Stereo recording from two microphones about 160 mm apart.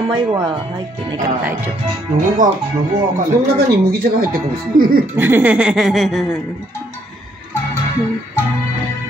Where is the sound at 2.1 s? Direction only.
55° right (ahead or behind).